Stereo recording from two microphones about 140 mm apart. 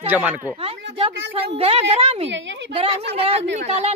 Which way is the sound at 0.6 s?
40° right (ahead or behind).